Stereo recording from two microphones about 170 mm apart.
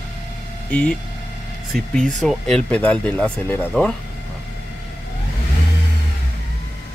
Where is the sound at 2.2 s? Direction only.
5° left (ahead or behind).